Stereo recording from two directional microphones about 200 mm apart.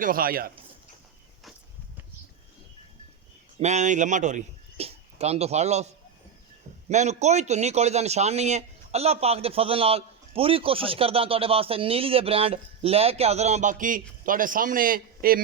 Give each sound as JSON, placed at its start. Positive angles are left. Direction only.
{"t": 0.0, "sound": "a man's voice", "side_deg": -45}
{"t": 3.6, "sound": "a man's voice", "side_deg": -35}
{"t": 6.9, "sound": "a man's voice", "side_deg": -35}